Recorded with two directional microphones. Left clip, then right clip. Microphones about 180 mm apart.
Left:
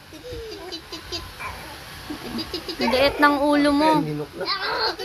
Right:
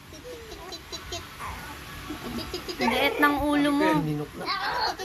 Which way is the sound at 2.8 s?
25° left (ahead or behind).